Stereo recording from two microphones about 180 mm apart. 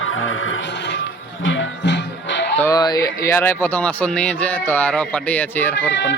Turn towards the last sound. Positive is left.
turn(degrees=80)